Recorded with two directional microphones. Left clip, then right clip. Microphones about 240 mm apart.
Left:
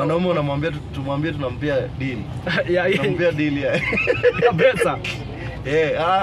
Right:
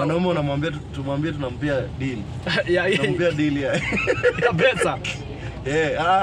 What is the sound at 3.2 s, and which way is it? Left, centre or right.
A man's voice, centre.